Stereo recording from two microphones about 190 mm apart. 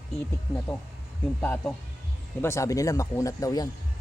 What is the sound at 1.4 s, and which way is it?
Speech, 10° left (ahead or behind).